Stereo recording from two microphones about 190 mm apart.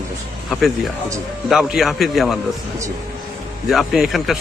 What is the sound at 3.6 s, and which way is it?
Speech, centre (ahead or behind).